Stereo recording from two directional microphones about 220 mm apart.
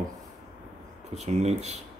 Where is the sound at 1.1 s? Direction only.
30° right (ahead or behind).